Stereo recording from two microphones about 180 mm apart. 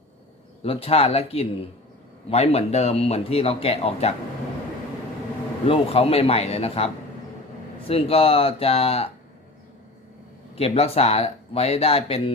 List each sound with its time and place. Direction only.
0.6 s speech: 30° left (ahead or behind)
5.6 s speech: 30° left (ahead or behind)
10.5 s speech: 35° left (ahead or behind)